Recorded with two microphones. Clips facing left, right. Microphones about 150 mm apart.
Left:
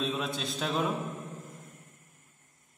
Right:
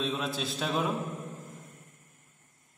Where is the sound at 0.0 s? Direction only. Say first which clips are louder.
Even; centre (ahead or behind).